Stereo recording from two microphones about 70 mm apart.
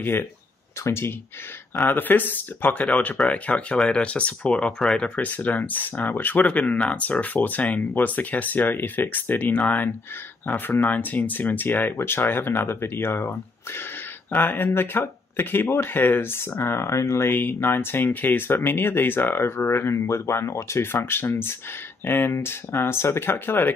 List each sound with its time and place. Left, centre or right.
0.0 s speech: left
1.8 s speech: left